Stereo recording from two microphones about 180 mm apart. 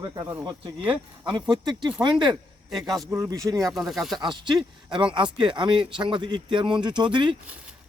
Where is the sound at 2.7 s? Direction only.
Centre (ahead or behind).